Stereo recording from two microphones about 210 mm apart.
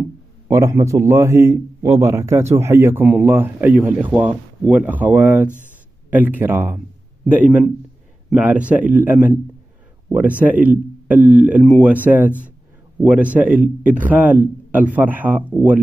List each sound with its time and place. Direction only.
0.5 s a man's voice: 15° right (ahead or behind)